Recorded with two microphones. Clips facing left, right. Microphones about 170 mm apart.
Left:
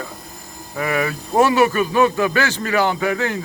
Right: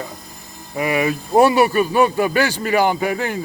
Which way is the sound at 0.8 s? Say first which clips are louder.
Right 2 dB; 15° right (ahead or behind).